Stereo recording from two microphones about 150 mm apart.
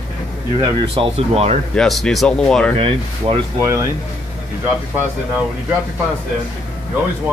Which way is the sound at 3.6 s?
20° right (ahead or behind).